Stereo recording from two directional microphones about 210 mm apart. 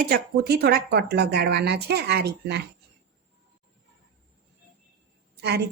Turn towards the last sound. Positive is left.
turn(degrees=-50)  # may be behind; listen again after turning